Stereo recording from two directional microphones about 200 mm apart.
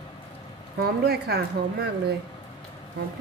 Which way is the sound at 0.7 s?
55° right (ahead or behind).